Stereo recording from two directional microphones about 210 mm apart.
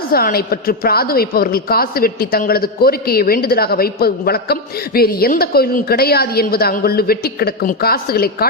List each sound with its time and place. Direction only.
0.1 s a woman's voice: 45° left (ahead or behind)